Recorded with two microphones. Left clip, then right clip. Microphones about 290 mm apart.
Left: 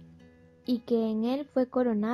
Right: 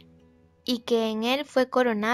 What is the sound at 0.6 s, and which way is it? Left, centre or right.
A woman's voice, right.